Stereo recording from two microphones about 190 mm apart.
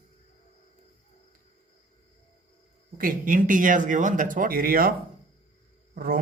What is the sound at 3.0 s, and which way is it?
Speech, 45° right (ahead or behind).